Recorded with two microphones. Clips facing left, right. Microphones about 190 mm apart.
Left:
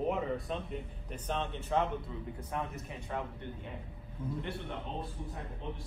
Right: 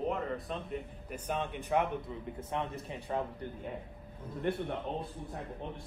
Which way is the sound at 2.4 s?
25° right (ahead or behind).